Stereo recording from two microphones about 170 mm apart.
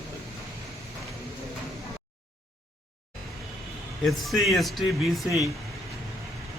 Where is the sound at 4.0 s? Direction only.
Centre (ahead or behind).